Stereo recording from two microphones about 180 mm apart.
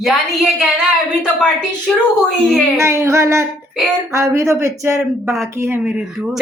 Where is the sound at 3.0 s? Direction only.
15° right (ahead or behind).